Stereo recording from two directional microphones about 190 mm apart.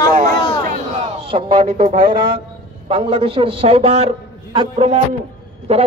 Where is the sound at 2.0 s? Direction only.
25° right (ahead or behind).